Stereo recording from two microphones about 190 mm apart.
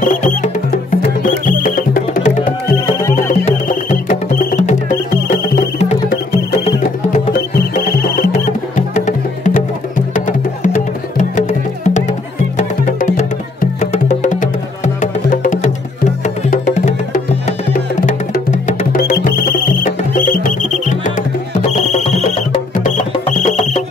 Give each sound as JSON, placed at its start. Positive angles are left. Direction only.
{"t": 0.0, "sound": "music", "side_deg": 45}
{"t": 13.6, "sound": "music", "side_deg": 35}